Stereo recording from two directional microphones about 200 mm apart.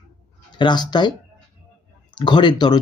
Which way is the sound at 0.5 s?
20° left (ahead or behind).